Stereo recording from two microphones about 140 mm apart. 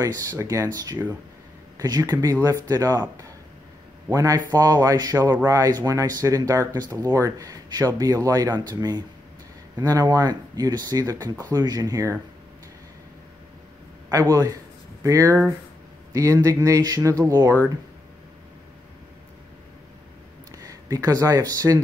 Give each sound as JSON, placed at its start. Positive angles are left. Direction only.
{"t": 0.0, "sound": "speech", "side_deg": -25}
{"t": 14.3, "sound": "speech", "side_deg": -25}
{"t": 20.5, "sound": "speech", "side_deg": -25}